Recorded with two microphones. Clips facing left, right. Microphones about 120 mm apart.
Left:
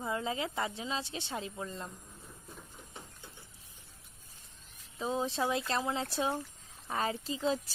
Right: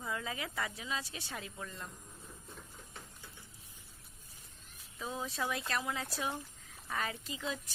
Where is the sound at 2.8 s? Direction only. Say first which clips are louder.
Left 2 dB; 20° left (ahead or behind).